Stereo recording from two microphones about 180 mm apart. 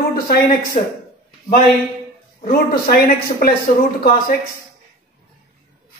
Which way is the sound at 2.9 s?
55° left (ahead or behind).